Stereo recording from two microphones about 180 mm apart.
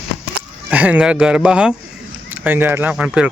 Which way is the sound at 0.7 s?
10° right (ahead or behind).